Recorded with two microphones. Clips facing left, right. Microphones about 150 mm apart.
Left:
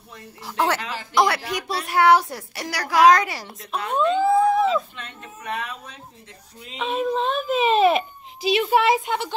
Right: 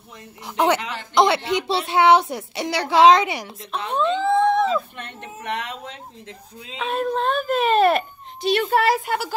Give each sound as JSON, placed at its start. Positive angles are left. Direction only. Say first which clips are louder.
{"t": 0.6, "sound": "a woman's voice", "louder": "right 3 dB", "side_deg": -20}
{"t": 4.2, "sound": "a sound", "louder": "even", "side_deg": 5}
{"t": 4.9, "sound": "speech", "louder": "right 3 dB", "side_deg": -65}
{"t": 6.8, "sound": "a child's voice", "louder": "even", "side_deg": 0}